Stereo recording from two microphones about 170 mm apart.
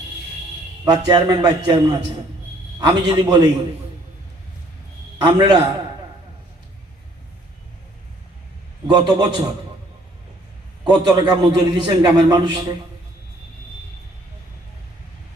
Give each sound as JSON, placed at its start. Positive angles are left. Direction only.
{"t": 0.9, "sound": "a man's voice", "side_deg": -25}
{"t": 5.2, "sound": "a man's voice", "side_deg": -25}
{"t": 8.9, "sound": "a man's voice", "side_deg": -25}
{"t": 10.8, "sound": "a man's voice", "side_deg": -25}